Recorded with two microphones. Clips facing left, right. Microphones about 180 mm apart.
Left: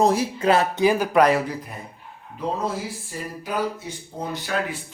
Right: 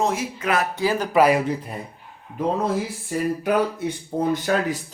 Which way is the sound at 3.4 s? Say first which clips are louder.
Right 2 dB; 60° right (ahead or behind).